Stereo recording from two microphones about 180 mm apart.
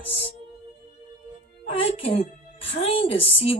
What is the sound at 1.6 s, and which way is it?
Speech, 30° left (ahead or behind).